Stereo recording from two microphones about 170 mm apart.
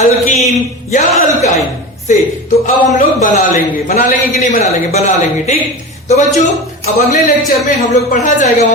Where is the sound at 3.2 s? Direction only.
45° left (ahead or behind).